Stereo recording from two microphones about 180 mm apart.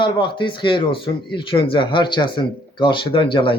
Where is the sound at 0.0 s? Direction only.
25° left (ahead or behind).